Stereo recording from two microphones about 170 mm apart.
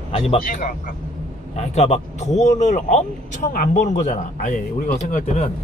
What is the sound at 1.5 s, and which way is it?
Speech, 40° left (ahead or behind).